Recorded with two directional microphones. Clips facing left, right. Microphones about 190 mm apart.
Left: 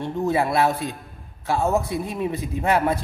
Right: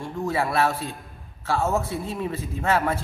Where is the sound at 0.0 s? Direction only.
20° left (ahead or behind).